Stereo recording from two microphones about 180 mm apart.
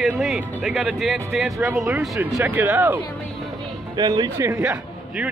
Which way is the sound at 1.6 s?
15° right (ahead or behind).